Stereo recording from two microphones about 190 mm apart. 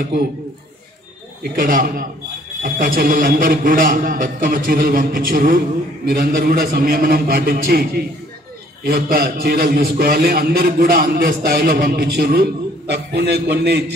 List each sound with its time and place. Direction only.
1.4 s a man's voice: 50° right (ahead or behind)